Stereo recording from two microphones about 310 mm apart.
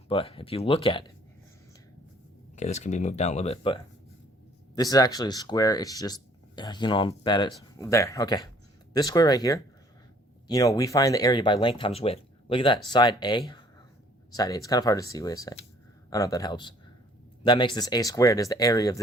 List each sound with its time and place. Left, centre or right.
0.1 s speech: centre
2.6 s speech: left